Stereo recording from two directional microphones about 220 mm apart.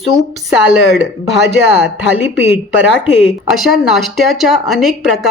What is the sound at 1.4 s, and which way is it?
Speech, 50° right (ahead or behind).